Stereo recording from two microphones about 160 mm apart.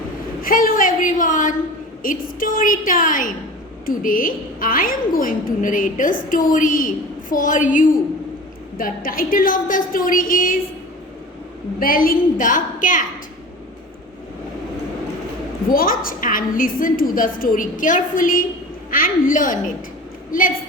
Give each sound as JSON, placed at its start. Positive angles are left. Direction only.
{"t": 0.4, "sound": "a woman's voice", "side_deg": 60}
{"t": 11.8, "sound": "a woman's voice", "side_deg": 65}
{"t": 15.7, "sound": "a woman's voice", "side_deg": 60}